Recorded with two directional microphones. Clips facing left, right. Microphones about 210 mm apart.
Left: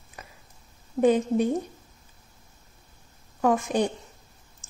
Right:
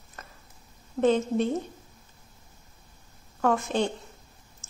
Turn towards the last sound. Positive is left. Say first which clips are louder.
# right 1 dB
turn(degrees=15)  # may be behind; listen again after turning